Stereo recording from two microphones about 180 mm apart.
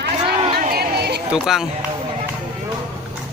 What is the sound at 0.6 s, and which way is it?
Chatter, 60° right (ahead or behind).